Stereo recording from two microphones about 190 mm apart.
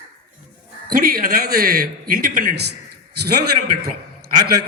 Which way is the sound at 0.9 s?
50° right (ahead or behind).